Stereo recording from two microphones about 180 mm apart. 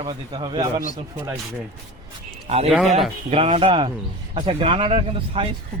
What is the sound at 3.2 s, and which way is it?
Speech, 35° right (ahead or behind).